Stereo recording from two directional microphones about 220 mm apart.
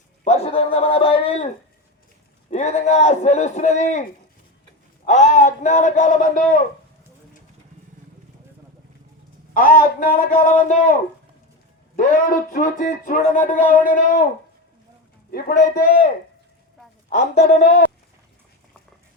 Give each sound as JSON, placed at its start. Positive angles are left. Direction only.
{"t": 0.3, "sound": "a man's voice", "side_deg": 25}
{"t": 2.5, "sound": "speech", "side_deg": 30}
{"t": 5.0, "sound": "speech", "side_deg": 35}
{"t": 9.6, "sound": "speech", "side_deg": 40}
{"t": 11.9, "sound": "speech", "side_deg": 40}
{"t": 15.3, "sound": "a man's voice", "side_deg": 45}
{"t": 17.3, "sound": "speech", "side_deg": 35}